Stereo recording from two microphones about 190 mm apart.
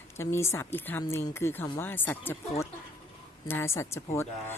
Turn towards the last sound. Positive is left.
turn(degrees=15)  # may be behind; listen again after turning